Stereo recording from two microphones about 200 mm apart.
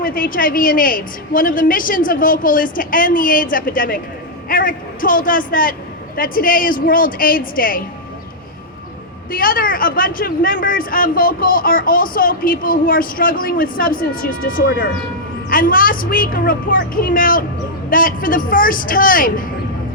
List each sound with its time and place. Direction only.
0.0 s a man's voice: 45° left (ahead or behind)
9.3 s a man's voice: 45° left (ahead or behind)